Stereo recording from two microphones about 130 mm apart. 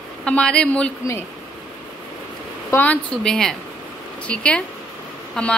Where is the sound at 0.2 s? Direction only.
10° left (ahead or behind).